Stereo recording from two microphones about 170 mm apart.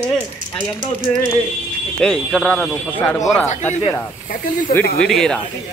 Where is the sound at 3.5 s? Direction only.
45° left (ahead or behind).